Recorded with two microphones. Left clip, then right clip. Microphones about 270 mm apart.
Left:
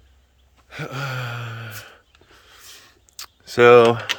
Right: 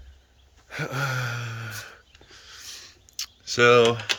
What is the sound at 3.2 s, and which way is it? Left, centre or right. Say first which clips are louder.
Speech: left 5 dB; left.